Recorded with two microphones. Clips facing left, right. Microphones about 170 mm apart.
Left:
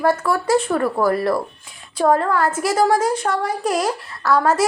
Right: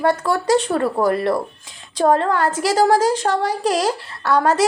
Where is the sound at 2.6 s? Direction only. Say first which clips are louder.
Right 3 dB; 90° right.